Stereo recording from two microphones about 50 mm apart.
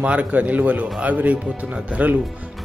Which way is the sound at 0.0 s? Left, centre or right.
Right.